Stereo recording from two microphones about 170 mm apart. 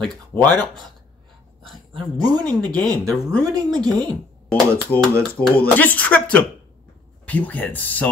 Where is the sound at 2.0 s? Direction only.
25° right (ahead or behind).